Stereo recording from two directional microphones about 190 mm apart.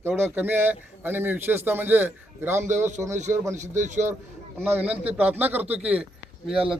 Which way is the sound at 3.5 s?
40° right (ahead or behind).